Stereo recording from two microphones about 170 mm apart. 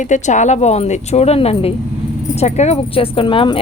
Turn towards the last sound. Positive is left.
turn(degrees=30)  # may be behind; listen again after turning